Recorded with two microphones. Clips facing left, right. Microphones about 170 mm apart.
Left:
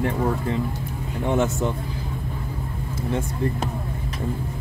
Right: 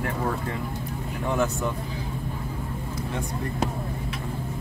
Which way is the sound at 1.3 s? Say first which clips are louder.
Left 3 dB; 25° left (ahead or behind).